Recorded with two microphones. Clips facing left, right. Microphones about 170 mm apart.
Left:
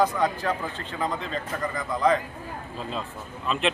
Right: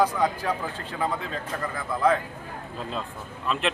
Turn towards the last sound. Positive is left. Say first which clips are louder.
# left 1 dB
turn(degrees=0)  # may be behind; listen again after turning